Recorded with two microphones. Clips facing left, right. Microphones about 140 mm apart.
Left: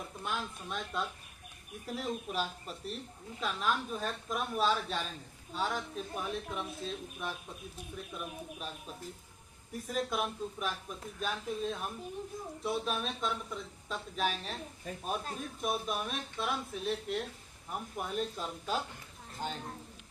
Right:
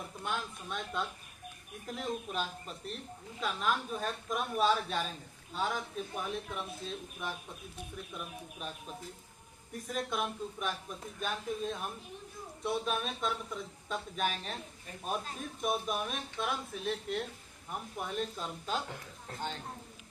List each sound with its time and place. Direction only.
0.2 s speech: centre (ahead or behind)
9.8 s speech: centre (ahead or behind)
19.3 s speech: 90° right